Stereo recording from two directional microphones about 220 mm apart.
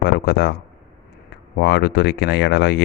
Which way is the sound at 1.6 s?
50° left (ahead or behind).